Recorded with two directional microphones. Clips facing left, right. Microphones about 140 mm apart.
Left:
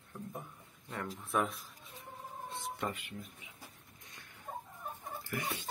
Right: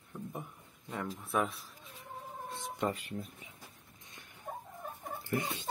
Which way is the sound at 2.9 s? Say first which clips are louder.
Right 5 dB; 35° right (ahead or behind).